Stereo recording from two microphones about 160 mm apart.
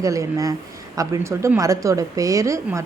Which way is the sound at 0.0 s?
20° right (ahead or behind).